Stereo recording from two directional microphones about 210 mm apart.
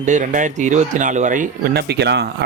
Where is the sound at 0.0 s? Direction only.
35° right (ahead or behind).